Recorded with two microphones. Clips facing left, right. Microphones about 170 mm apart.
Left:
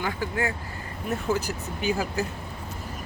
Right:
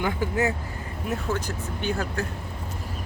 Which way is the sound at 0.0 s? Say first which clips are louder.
Right 3 dB; 20° right (ahead or behind).